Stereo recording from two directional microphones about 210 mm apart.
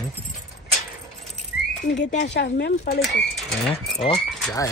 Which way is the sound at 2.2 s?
50° left (ahead or behind).